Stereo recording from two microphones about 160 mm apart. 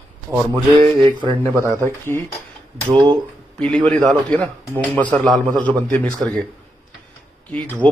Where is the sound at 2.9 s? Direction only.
25° right (ahead or behind).